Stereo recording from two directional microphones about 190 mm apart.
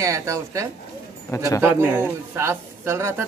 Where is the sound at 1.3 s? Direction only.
20° left (ahead or behind).